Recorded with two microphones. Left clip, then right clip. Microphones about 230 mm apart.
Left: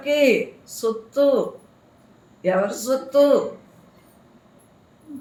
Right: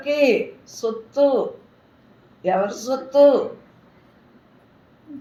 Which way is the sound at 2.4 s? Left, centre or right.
Left.